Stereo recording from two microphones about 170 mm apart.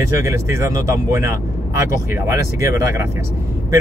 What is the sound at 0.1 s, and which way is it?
Speech, 15° right (ahead or behind).